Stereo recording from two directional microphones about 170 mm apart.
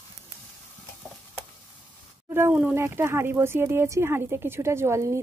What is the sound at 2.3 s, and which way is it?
Speech, 10° right (ahead or behind).